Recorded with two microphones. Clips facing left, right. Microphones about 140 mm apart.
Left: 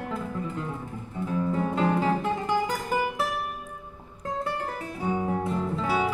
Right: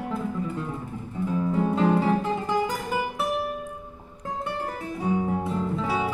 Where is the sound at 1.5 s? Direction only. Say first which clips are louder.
Right 4 dB; centre (ahead or behind).